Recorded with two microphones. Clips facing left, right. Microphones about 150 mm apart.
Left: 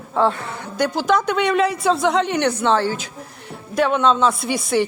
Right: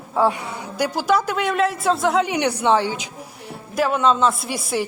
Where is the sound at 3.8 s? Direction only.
5° right (ahead or behind).